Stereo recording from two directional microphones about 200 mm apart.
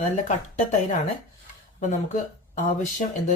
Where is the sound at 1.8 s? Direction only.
35° left (ahead or behind).